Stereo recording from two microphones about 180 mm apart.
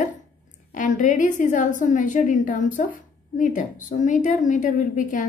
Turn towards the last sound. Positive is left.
turn(degrees=45)  # may be behind; listen again after turning